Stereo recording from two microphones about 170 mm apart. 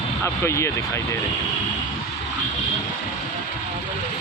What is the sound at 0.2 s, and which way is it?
Speech, 15° left (ahead or behind).